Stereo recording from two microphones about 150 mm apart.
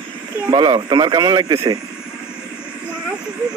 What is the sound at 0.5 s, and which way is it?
A man's voice, 30° right (ahead or behind).